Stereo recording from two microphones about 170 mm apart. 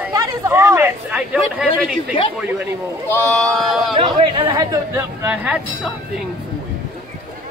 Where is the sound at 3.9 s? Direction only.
25° right (ahead or behind).